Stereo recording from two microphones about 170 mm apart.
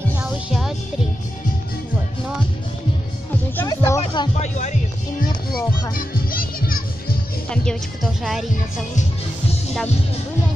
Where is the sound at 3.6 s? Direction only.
20° left (ahead or behind).